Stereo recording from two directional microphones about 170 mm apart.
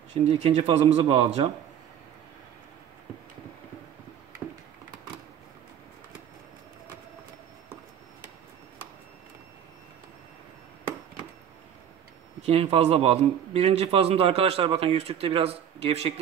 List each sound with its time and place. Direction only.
0.1 s a man's voice: 40° right (ahead or behind)
12.4 s a man's voice: 35° right (ahead or behind)